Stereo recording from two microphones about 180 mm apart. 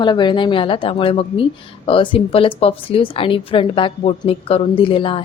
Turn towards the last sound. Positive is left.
turn(degrees=30)  # may be behind; listen again after turning